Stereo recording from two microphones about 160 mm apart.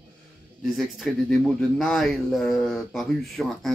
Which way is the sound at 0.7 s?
Centre (ahead or behind).